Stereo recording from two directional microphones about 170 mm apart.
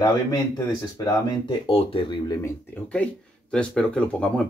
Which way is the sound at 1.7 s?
30° left (ahead or behind).